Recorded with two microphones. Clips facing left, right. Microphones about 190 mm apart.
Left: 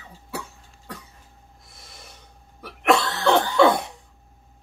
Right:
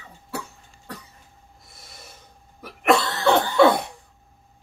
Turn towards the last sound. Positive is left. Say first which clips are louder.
# right 1 dB
turn(degrees=0)  # may be behind; listen again after turning